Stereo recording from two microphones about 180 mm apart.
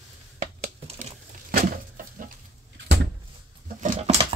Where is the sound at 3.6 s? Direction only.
45° right (ahead or behind).